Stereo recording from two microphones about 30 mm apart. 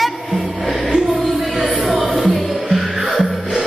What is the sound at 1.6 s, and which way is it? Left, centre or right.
Music, centre.